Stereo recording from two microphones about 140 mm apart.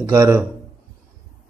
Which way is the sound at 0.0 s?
25° right (ahead or behind).